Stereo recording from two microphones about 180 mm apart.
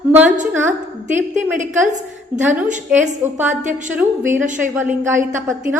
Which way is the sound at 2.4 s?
10° right (ahead or behind).